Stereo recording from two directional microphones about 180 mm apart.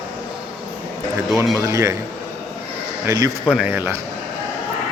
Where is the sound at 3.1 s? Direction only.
20° right (ahead or behind).